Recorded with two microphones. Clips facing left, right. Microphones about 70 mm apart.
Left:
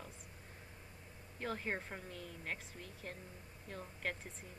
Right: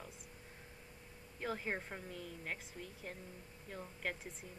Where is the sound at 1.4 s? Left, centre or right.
Centre.